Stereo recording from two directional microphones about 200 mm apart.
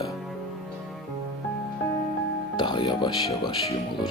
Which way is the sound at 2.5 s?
25° left (ahead or behind).